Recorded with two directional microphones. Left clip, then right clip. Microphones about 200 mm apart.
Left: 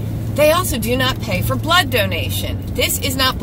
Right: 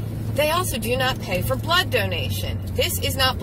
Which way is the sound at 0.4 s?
15° left (ahead or behind).